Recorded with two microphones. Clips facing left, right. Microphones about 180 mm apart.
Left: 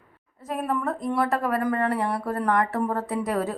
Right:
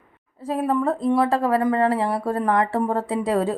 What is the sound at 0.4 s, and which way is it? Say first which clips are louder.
A woman's voice: right 5 dB; 30° right (ahead or behind).